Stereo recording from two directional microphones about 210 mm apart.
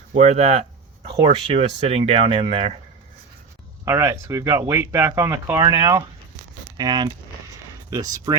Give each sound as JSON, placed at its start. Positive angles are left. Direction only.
{"t": 0.1, "sound": "speech", "side_deg": -35}
{"t": 3.8, "sound": "speech", "side_deg": -15}